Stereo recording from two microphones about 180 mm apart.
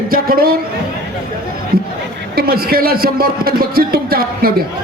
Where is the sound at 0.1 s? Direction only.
55° right (ahead or behind).